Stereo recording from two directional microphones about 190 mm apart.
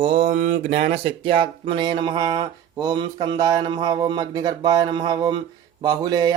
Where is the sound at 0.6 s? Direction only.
60° right (ahead or behind).